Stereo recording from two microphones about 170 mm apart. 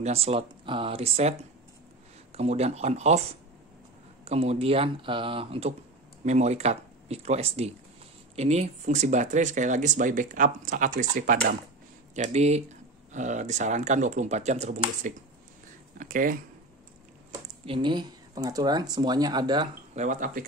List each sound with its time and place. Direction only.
0.0 s speech: 35° right (ahead or behind)
2.3 s speech: 40° right (ahead or behind)
12.2 s speech: 40° right (ahead or behind)
17.3 s speech: 30° right (ahead or behind)
20.0 s speech: 50° right (ahead or behind)